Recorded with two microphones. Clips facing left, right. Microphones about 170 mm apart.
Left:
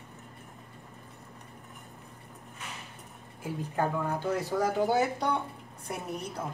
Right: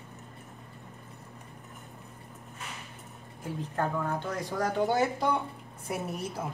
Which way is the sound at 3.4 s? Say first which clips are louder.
Left 1 dB; 10° left (ahead or behind).